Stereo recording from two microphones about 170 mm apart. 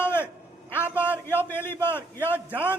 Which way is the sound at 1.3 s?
10° left (ahead or behind).